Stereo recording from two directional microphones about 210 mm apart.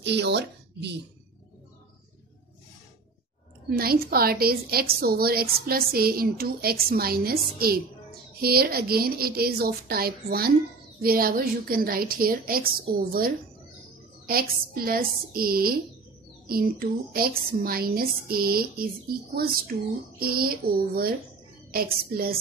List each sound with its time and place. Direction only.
0.0 s speech: 55° right (ahead or behind)
3.6 s a woman's voice: 45° right (ahead or behind)